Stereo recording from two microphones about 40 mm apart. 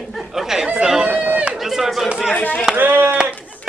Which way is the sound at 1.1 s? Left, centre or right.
Right.